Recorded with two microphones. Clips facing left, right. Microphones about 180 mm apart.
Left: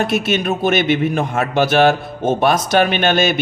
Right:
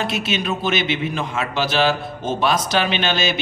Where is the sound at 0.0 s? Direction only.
55° left (ahead or behind).